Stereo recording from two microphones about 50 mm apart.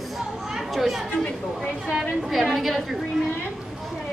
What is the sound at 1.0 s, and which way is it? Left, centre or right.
Chatter, left.